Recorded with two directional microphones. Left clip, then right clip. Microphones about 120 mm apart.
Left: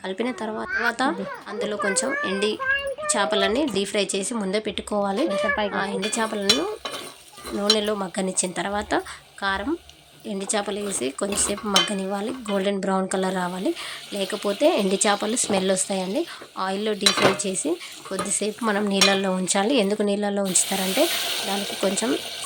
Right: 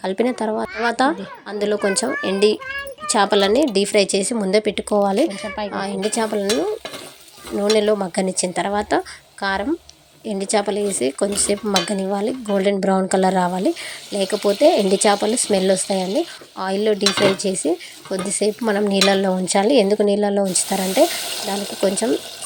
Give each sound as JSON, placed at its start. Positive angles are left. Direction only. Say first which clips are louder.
{"t": 0.0, "sound": "speech", "louder": "right 7 dB", "side_deg": -40}
{"t": 5.7, "sound": "speech", "louder": "right 3 dB", "side_deg": -25}
{"t": 7.6, "sound": "speech", "louder": "right 5 dB", "side_deg": -25}
{"t": 14.6, "sound": "speech", "louder": "right 5 dB", "side_deg": -25}